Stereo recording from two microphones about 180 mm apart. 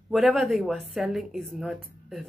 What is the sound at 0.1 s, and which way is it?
A woman's voice, centre (ahead or behind).